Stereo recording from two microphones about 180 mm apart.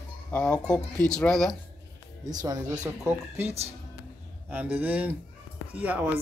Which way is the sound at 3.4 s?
35° right (ahead or behind).